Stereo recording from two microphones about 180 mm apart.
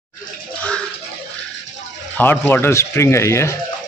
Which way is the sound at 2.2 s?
10° left (ahead or behind).